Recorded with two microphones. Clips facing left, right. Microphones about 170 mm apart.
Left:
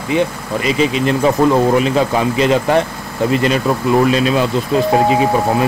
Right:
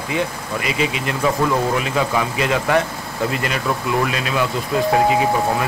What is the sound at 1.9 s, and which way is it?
Speech, 30° left (ahead or behind).